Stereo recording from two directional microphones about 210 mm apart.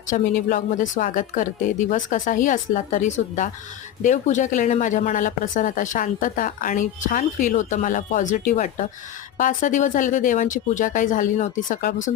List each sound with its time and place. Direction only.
0.1 s speech: 40° left (ahead or behind)